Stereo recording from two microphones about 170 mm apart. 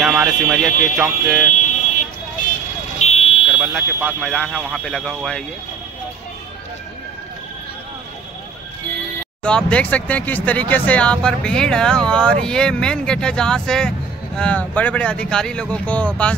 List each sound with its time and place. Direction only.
0.0 s speech: centre (ahead or behind)
3.0 s a sound: 40° left (ahead or behind)
3.5 s speech: centre (ahead or behind)
9.4 s speech: 5° left (ahead or behind)